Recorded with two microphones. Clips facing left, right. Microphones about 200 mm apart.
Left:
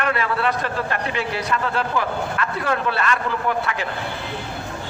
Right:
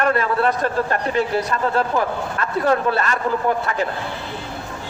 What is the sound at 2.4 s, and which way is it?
A man's voice, 40° right (ahead or behind).